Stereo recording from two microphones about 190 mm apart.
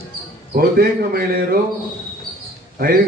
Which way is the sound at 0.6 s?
50° right (ahead or behind).